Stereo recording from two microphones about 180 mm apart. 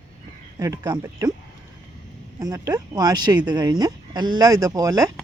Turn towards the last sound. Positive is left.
turn(degrees=-20)  # may be behind; listen again after turning